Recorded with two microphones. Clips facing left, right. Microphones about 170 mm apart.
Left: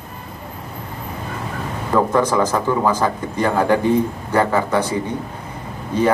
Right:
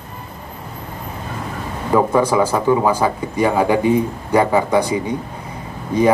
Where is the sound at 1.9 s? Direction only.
10° right (ahead or behind).